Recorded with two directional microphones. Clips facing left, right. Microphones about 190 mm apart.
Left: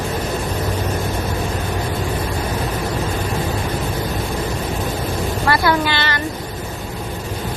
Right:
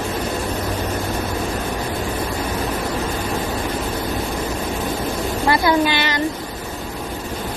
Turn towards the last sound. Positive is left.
turn(degrees=-15)  # may be behind; listen again after turning